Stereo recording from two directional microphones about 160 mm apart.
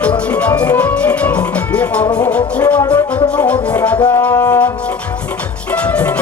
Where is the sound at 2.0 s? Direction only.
25° left (ahead or behind).